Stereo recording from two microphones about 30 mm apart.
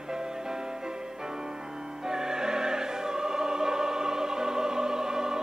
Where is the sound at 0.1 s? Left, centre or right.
Right.